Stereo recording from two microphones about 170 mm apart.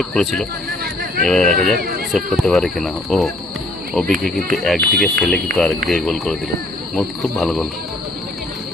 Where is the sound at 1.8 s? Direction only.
65° right (ahead or behind).